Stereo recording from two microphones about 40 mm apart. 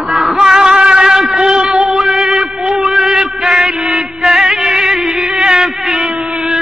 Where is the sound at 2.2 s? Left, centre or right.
Centre.